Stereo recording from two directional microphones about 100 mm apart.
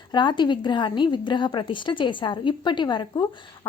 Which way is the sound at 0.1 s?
50° left (ahead or behind).